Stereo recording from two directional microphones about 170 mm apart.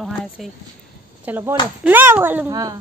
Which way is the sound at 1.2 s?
10° right (ahead or behind).